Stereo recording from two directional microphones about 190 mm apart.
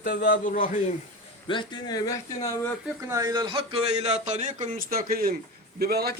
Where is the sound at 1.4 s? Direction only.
25° left (ahead or behind).